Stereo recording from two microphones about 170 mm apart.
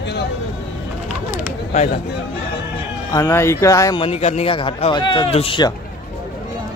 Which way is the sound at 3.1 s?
15° left (ahead or behind).